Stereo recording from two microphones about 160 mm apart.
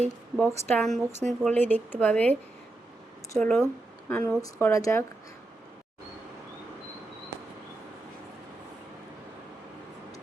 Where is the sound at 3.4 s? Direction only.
5° left (ahead or behind); by 5.0 s 20° left (ahead or behind).